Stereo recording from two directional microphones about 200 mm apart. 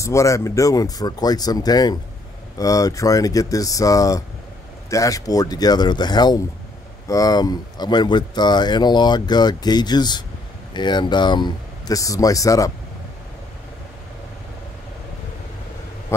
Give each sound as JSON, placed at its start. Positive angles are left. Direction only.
{"t": 0.0, "sound": "speech", "side_deg": 15}
{"t": 16.1, "sound": "a man's voice", "side_deg": 15}